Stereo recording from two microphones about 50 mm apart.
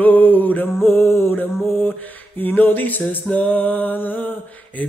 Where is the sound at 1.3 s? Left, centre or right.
Left.